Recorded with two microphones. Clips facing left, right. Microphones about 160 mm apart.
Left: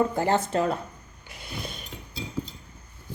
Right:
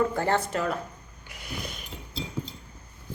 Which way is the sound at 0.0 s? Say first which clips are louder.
Left 1 dB; 20° left (ahead or behind).